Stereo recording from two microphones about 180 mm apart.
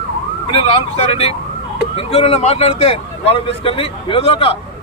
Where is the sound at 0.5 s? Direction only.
35° left (ahead or behind).